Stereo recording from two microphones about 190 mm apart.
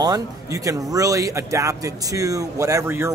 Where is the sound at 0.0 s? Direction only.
20° right (ahead or behind).